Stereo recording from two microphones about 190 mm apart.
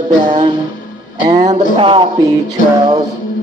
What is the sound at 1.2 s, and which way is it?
Music, 35° right (ahead or behind).